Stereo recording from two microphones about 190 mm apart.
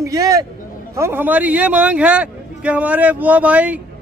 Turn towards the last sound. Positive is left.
turn(degrees=-5)  # may be behind; listen again after turning